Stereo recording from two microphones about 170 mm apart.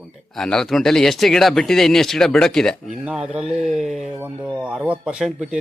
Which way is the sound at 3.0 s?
5° right (ahead or behind).